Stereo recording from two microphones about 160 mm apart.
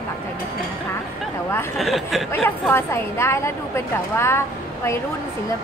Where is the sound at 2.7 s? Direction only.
15° left (ahead or behind).